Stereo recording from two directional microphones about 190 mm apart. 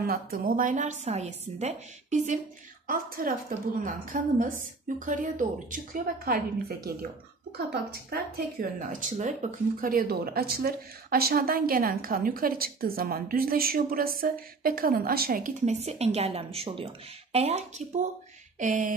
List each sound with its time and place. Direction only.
0.0 s a woman's voice: 50° right (ahead or behind)
7.5 s speech: 55° right (ahead or behind)